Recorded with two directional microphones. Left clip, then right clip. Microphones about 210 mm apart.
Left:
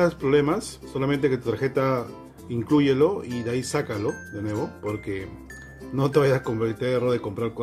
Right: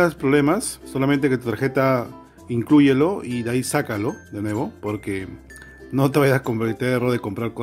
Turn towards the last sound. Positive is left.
turn(degrees=-45)  # may be behind; listen again after turning